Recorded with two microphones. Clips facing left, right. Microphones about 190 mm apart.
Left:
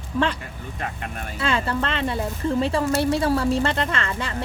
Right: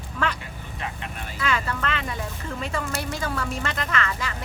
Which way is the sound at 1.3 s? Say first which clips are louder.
Left 4 dB; 30° left (ahead or behind).